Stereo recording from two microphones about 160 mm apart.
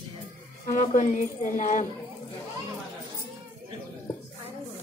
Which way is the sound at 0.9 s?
50° left (ahead or behind).